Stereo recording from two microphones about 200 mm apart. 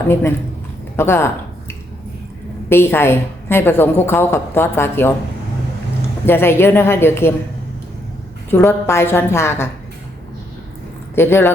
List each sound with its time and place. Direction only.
0.1 s a woman's voice: 10° left (ahead or behind)
2.6 s a woman's voice: 10° left (ahead or behind)
6.2 s a woman's voice: 10° left (ahead or behind)
8.4 s a woman's voice: 10° left (ahead or behind)
11.1 s speech: 10° left (ahead or behind)